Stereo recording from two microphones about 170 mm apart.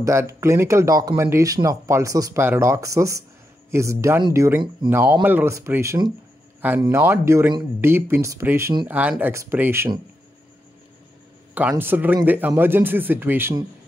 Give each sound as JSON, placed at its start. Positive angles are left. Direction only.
{"t": 0.0, "sound": "speech", "side_deg": -15}
{"t": 11.7, "sound": "speech", "side_deg": -10}